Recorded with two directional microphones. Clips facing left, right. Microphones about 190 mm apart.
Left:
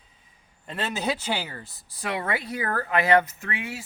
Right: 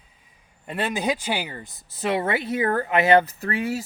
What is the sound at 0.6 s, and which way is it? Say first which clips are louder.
Speech: right 3 dB; 10° right (ahead or behind).